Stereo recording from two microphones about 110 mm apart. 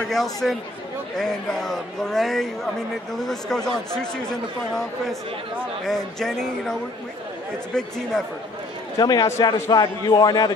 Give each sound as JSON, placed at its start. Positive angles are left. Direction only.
{"t": 0.0, "sound": "speech", "side_deg": 5}
{"t": 5.9, "sound": "speech", "side_deg": 5}
{"t": 8.9, "sound": "a man's voice", "side_deg": 35}